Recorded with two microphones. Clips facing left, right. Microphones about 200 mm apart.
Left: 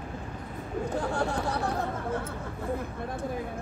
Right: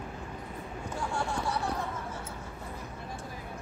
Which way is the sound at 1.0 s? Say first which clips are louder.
Left 1 dB; 60° left (ahead or behind).